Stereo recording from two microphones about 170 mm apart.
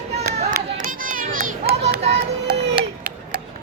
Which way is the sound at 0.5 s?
55° right (ahead or behind).